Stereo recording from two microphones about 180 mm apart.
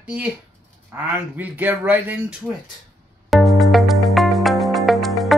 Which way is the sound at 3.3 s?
Centre (ahead or behind).